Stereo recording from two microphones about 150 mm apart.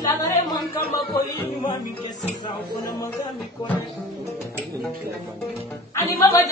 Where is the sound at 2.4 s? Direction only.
25° left (ahead or behind).